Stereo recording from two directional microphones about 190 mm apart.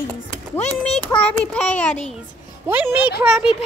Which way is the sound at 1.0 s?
5° left (ahead or behind).